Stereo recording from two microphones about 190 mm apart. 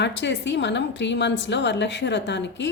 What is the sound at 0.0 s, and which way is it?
A woman's voice, 65° left (ahead or behind).